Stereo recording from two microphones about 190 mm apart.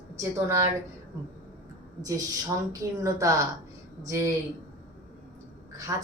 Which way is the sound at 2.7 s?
15° right (ahead or behind).